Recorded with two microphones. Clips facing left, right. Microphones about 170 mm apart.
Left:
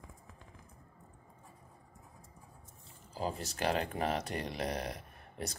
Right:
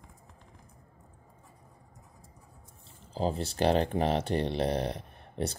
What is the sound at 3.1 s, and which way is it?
Speech, 30° right (ahead or behind).